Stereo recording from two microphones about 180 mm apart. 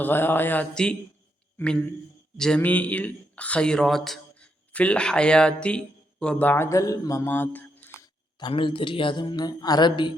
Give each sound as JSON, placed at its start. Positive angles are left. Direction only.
{"t": 0.0, "sound": "a man's voice", "side_deg": 10}
{"t": 8.4, "sound": "speech", "side_deg": 25}